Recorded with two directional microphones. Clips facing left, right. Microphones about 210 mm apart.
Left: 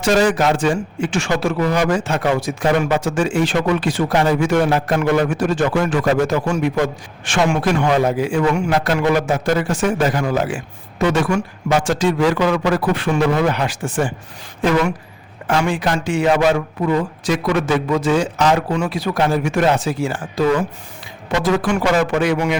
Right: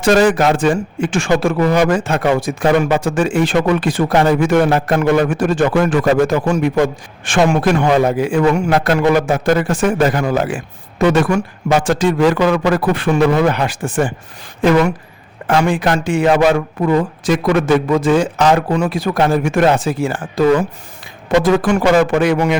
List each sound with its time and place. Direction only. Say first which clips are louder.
0.0 s a man's voice: right 3 dB; 55° right (ahead or behind)
15.4 s speech: right 4 dB; 55° right (ahead or behind)